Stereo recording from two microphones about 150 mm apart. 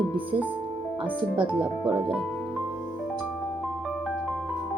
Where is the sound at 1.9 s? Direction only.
35° right (ahead or behind).